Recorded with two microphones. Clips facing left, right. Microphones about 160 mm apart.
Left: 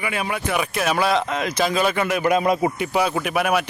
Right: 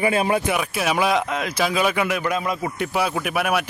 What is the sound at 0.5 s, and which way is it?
A man's voice, 5° right (ahead or behind).